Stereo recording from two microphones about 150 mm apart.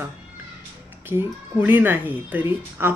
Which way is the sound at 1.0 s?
15° right (ahead or behind).